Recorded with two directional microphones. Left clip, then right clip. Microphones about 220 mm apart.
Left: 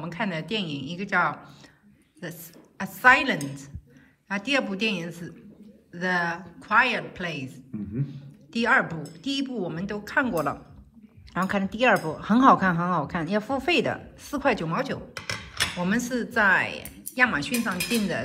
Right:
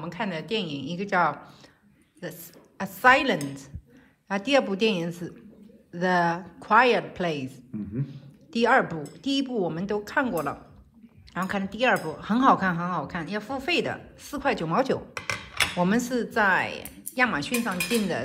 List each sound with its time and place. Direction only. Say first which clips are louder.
0.0 s a woman's voice: left 1 dB; 5° right (ahead or behind)
15.1 s a sound: right 2 dB; 25° right (ahead or behind)
15.8 s a woman's voice: right 2 dB; 10° right (ahead or behind)